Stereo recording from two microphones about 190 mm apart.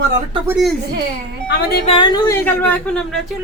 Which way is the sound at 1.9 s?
25° left (ahead or behind).